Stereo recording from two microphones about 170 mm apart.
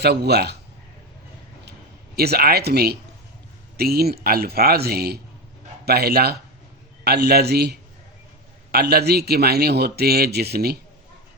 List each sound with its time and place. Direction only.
0.0 s a man's voice: 75° right (ahead or behind)
2.1 s a man's voice: 65° right (ahead or behind)